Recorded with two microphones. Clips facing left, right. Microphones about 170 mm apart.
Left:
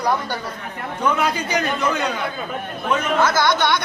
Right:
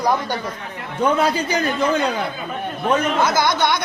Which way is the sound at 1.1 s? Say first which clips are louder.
Right 2 dB; 30° right (ahead or behind).